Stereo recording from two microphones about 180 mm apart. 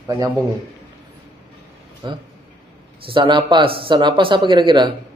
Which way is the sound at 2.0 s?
25° right (ahead or behind).